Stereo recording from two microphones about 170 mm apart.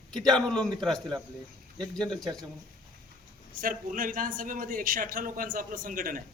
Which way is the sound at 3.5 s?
55° right (ahead or behind).